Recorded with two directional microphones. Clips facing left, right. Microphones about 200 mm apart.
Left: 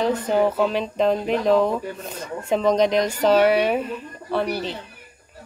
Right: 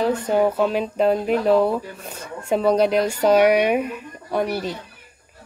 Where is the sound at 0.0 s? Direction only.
10° right (ahead or behind).